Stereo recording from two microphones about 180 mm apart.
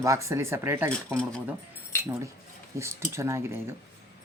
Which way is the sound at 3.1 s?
15° right (ahead or behind).